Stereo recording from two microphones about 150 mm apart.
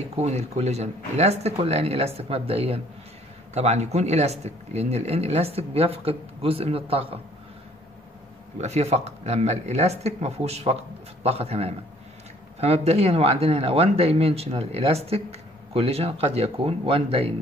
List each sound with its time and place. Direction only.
0.1 s speech: 45° right (ahead or behind)
8.5 s speech: 45° right (ahead or behind)